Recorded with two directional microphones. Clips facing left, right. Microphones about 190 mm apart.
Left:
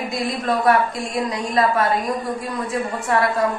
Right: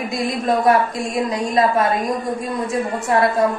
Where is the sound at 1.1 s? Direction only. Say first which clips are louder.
Right 3 dB; 25° right (ahead or behind).